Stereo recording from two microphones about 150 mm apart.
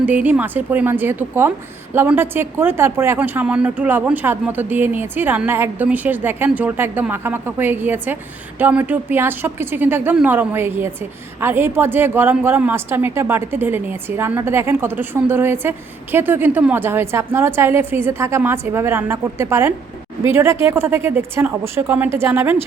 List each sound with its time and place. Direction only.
0.0 s a woman's voice: 10° right (ahead or behind)